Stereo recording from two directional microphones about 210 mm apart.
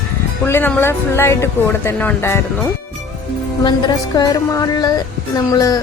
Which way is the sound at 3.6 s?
20° left (ahead or behind).